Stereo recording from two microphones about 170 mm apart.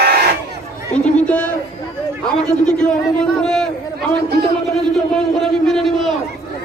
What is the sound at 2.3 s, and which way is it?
A man's voice, 5° left (ahead or behind).